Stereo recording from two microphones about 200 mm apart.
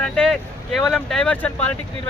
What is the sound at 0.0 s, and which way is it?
Speech, centre (ahead or behind).